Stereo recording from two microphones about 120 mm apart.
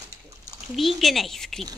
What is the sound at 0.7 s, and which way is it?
Speech, centre (ahead or behind).